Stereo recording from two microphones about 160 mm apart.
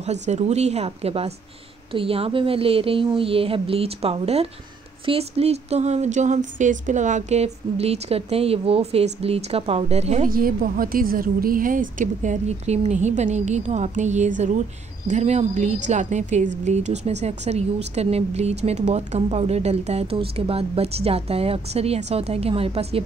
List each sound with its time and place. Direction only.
0.0 s a woman's voice: 45° right (ahead or behind)
10.2 s a woman's voice: 65° right (ahead or behind); by 23.0 s 40° right (ahead or behind)